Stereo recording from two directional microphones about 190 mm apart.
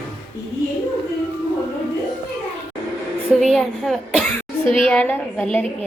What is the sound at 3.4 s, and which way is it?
Speech, centre (ahead or behind).